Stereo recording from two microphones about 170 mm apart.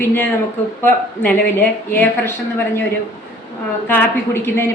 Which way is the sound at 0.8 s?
10° left (ahead or behind).